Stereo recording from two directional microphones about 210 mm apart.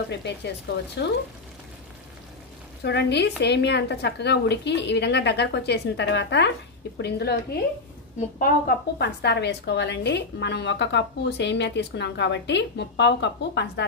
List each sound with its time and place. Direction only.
0.1 s a woman's voice: 55° left (ahead or behind)
2.8 s a woman's voice: 50° left (ahead or behind)